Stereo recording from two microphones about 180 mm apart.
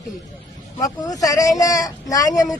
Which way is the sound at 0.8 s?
20° left (ahead or behind).